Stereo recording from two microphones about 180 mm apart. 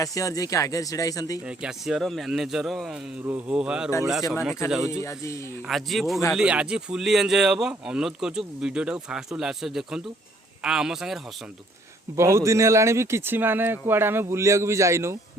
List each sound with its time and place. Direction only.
0.0 s speech: 20° left (ahead or behind)
1.5 s speech: 5° right (ahead or behind)
5.6 s speech: centre (ahead or behind)
12.1 s speech: 15° right (ahead or behind)